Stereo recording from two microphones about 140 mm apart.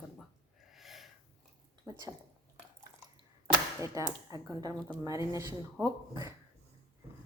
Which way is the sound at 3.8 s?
25° right (ahead or behind).